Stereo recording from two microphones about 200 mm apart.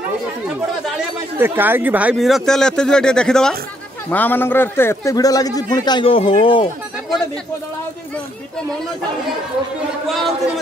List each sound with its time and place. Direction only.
1.4 s a man's voice: 10° right (ahead or behind); by 6.7 s 30° left (ahead or behind)
10.0 s speech: centre (ahead or behind)